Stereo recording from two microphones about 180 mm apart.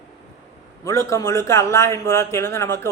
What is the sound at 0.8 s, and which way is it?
A man's voice, 15° left (ahead or behind).